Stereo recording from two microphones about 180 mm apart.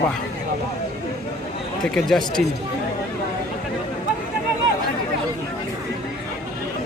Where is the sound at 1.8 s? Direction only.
5° left (ahead or behind).